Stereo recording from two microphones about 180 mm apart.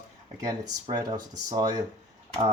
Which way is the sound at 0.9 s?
20° right (ahead or behind).